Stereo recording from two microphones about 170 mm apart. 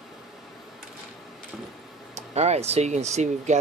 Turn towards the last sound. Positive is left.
turn(degrees=-45)  # may be behind; listen again after turning